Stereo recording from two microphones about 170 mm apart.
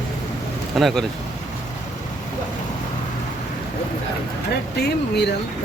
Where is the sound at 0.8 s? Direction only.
Centre (ahead or behind).